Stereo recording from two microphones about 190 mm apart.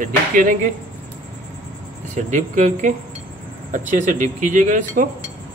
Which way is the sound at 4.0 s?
40° right (ahead or behind).